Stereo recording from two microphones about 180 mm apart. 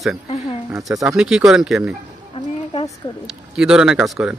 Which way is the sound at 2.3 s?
30° left (ahead or behind).